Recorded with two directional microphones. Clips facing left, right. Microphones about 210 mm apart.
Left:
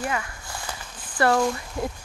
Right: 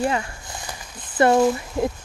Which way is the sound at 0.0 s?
30° right (ahead or behind).